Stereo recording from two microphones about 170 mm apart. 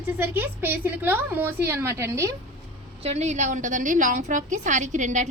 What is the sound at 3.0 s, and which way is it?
A woman's voice, 40° right (ahead or behind).